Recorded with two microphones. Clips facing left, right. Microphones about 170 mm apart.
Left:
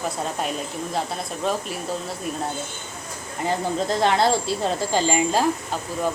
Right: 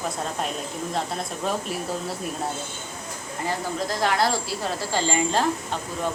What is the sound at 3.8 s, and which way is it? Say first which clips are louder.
Speech: left 3 dB; 25° left (ahead or behind).